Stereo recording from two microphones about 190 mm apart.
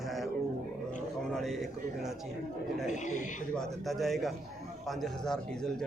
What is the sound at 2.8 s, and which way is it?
Speech, 40° left (ahead or behind).